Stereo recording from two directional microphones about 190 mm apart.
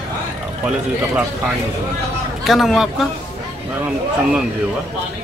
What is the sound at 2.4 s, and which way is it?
Speech, centre (ahead or behind).